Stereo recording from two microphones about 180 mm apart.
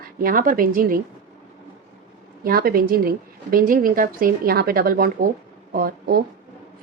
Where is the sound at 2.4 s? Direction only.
55° right (ahead or behind).